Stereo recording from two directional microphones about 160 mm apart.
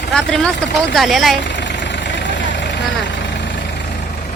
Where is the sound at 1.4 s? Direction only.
90° left.